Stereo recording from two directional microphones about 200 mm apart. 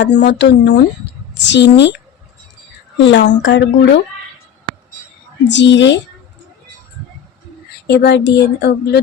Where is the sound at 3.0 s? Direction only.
65° left (ahead or behind).